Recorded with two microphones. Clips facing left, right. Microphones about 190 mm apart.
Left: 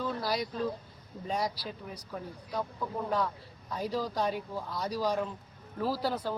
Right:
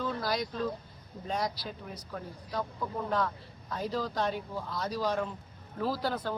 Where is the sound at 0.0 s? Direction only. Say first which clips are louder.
Even; 10° left (ahead or behind).